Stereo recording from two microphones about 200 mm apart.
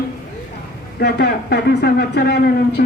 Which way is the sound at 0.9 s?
55° left (ahead or behind).